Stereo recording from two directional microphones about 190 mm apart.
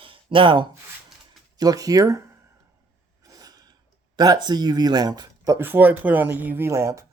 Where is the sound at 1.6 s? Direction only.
20° right (ahead or behind).